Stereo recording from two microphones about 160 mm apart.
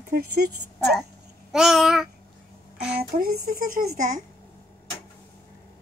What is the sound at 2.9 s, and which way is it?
Speech, 60° right (ahead or behind).